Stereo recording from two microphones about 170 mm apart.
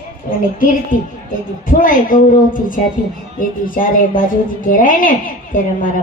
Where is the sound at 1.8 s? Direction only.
55° left (ahead or behind).